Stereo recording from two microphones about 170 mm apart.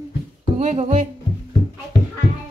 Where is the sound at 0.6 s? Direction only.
45° right (ahead or behind).